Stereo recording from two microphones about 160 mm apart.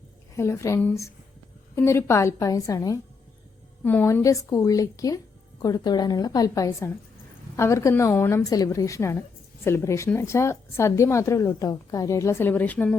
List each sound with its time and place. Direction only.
0.3 s a woman's voice: 15° left (ahead or behind)